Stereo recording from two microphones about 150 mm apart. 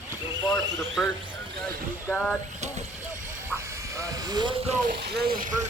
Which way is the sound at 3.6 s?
20° right (ahead or behind).